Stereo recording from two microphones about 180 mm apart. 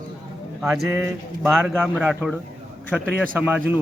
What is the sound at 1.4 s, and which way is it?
A man's voice, centre (ahead or behind).